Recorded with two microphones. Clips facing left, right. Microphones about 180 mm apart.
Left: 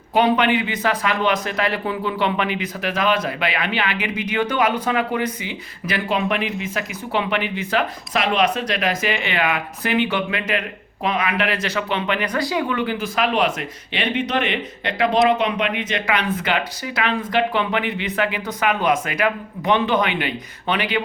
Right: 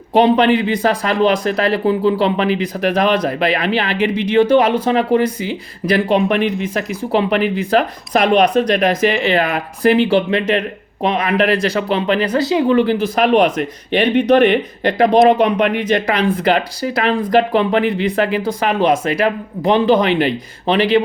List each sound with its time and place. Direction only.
0.1 s speech: 35° right (ahead or behind)